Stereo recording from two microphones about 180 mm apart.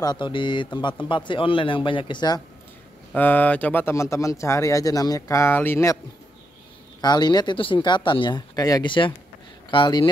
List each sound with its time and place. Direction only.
0.0 s speech: 25° left (ahead or behind)
3.1 s speech: 10° left (ahead or behind)
7.0 s speech: 25° left (ahead or behind)